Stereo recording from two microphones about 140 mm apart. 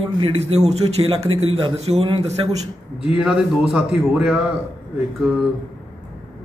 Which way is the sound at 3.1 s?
5° right (ahead or behind).